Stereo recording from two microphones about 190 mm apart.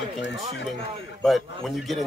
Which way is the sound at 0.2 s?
65° left (ahead or behind).